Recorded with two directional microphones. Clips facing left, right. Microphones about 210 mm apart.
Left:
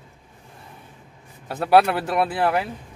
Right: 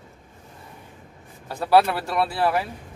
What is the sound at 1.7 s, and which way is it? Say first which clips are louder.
Speech: left 1 dB; 20° left (ahead or behind).